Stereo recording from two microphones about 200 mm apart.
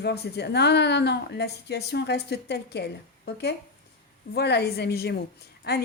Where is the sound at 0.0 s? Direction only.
55° left (ahead or behind).